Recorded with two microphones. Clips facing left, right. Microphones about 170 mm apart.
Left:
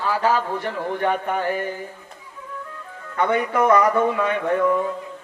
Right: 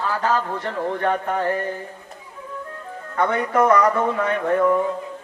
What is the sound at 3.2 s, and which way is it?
A man's voice, 15° left (ahead or behind).